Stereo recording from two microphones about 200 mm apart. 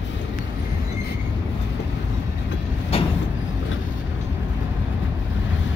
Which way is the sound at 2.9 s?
30° left (ahead or behind).